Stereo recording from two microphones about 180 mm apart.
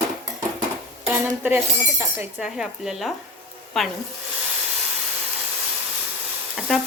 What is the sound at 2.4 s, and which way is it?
Speech, centre (ahead or behind).